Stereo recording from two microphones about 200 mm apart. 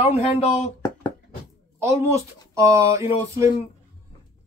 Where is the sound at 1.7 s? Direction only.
15° right (ahead or behind).